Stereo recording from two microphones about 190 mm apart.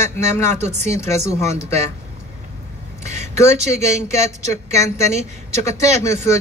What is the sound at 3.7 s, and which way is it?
Speech, 35° right (ahead or behind).